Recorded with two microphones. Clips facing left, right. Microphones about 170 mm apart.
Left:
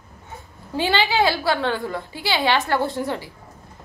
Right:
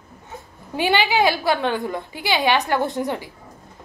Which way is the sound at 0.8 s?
15° right (ahead or behind).